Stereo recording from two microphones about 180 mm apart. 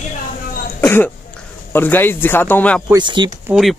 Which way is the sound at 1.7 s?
10° left (ahead or behind).